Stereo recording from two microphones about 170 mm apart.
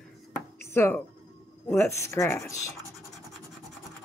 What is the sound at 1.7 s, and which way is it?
Speech, 15° left (ahead or behind).